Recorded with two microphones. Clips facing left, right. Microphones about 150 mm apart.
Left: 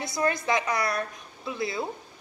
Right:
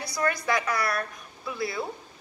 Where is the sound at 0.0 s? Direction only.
20° left (ahead or behind).